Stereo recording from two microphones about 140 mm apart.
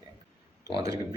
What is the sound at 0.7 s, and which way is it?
Speech, 25° right (ahead or behind).